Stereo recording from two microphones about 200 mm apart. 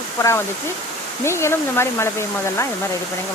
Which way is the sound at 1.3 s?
15° left (ahead or behind).